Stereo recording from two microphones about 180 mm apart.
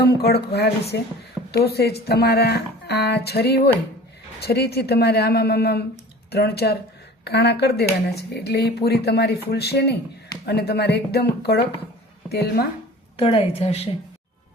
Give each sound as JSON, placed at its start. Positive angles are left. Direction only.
{"t": 0.0, "sound": "speech", "side_deg": 60}
{"t": 13.1, "sound": "a woman's voice", "side_deg": 35}